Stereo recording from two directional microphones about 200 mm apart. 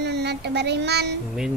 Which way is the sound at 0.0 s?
55° right (ahead or behind).